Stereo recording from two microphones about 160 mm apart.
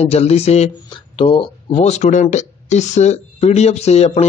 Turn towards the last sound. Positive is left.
turn(degrees=40)  # may be behind; listen again after turning